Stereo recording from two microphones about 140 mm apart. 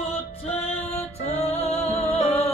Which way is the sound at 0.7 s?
50° left (ahead or behind).